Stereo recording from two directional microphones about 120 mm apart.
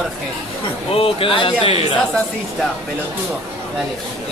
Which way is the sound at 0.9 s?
50° left (ahead or behind).